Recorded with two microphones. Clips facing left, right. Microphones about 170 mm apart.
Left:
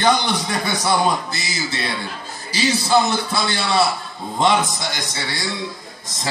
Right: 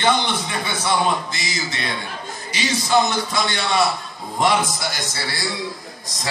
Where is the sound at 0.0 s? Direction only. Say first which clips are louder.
Left 2 dB; 40° left (ahead or behind).